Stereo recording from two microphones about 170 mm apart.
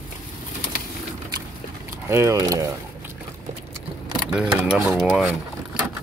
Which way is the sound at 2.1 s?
15° right (ahead or behind).